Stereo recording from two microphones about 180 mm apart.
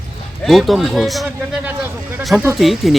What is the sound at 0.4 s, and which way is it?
A man's voice, centre (ahead or behind).